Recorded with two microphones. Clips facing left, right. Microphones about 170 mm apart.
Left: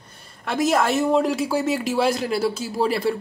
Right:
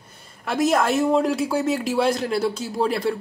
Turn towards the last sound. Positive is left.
turn(degrees=5)  # may be behind; listen again after turning